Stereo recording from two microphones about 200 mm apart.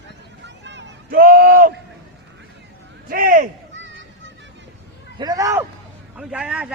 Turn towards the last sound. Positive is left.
turn(degrees=-5)  # may be behind; listen again after turning